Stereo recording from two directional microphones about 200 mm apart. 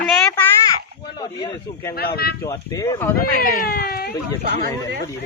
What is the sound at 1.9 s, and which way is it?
Speech, 50° left (ahead or behind).